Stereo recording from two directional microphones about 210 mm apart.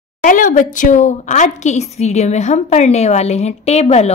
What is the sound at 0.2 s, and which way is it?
A woman's voice, 40° left (ahead or behind).